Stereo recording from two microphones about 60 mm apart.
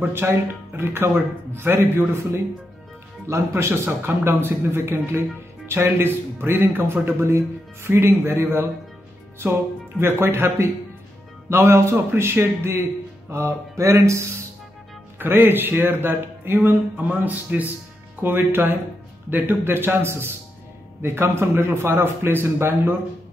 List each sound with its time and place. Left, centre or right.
0.0 s a man's voice: right
15.1 s a man's voice: right